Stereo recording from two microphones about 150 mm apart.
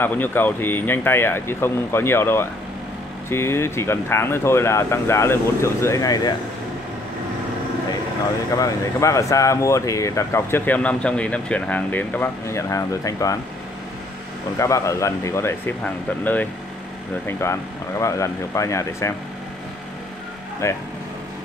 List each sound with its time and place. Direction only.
0.0 s speech: 15° left (ahead or behind)
8.5 s speech: 20° left (ahead or behind)
14.6 s speech: 20° left (ahead or behind)
20.6 s speech: 20° left (ahead or behind)